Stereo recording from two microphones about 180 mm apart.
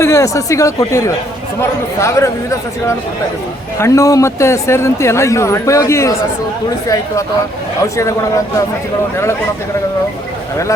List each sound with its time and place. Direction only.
0.0 s speech: 15° left (ahead or behind)
7.8 s speech: 15° left (ahead or behind)